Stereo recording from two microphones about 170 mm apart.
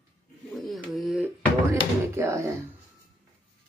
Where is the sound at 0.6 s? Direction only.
Centre (ahead or behind).